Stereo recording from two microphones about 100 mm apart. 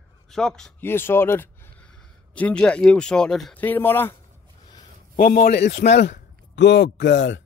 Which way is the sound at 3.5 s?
20° left (ahead or behind).